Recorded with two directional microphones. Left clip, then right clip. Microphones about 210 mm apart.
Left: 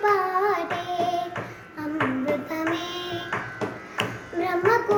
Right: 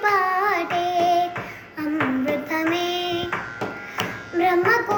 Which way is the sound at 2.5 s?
15° left (ahead or behind).